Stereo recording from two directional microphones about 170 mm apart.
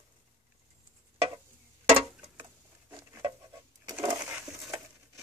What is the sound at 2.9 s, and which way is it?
Patter, 15° right (ahead or behind).